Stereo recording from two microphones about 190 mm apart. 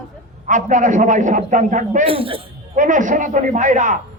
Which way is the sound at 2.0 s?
30° right (ahead or behind).